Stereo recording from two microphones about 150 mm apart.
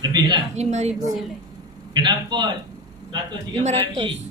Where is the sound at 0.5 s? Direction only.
50° right (ahead or behind).